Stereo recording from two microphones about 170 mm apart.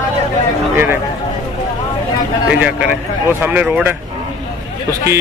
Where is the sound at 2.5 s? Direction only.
5° right (ahead or behind).